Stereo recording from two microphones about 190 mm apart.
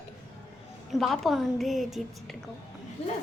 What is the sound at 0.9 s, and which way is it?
Speech, centre (ahead or behind).